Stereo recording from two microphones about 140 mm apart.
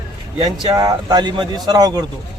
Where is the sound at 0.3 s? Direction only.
30° right (ahead or behind).